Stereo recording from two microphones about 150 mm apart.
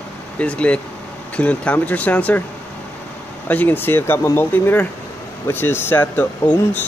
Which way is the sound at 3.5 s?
10° left (ahead or behind).